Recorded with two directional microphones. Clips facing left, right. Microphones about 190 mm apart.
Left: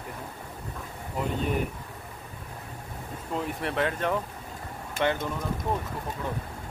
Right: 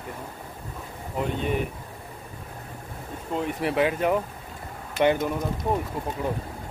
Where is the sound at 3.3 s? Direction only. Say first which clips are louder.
Right 4 dB; centre (ahead or behind); by 5.3 s 15° right (ahead or behind).